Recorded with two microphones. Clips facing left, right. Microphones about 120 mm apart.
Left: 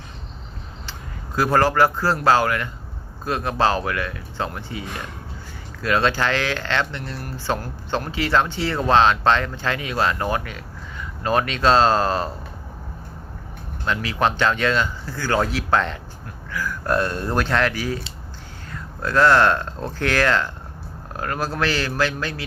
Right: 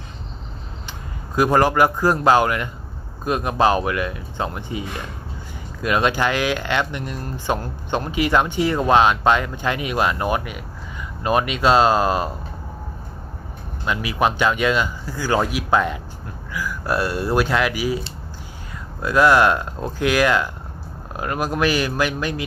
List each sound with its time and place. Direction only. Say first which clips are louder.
1.4 s speech: right 1 dB; 15° right (ahead or behind)
5.8 s speech: right 1 dB; 15° right (ahead or behind)
13.8 s speech: right 1 dB; 15° right (ahead or behind)
19.0 s speech: right 1 dB; 10° right (ahead or behind)